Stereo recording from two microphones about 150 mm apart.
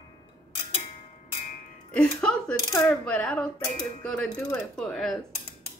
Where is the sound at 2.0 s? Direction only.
5° left (ahead or behind).